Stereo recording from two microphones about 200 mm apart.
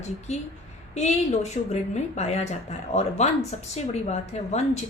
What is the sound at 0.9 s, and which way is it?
A woman's voice, 35° left (ahead or behind).